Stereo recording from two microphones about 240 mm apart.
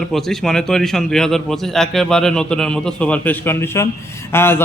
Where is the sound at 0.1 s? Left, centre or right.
Centre.